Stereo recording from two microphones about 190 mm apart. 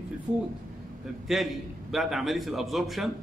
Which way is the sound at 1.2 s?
Centre (ahead or behind).